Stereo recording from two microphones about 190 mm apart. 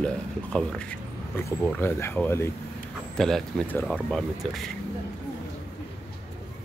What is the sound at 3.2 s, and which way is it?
Speech, centre (ahead or behind).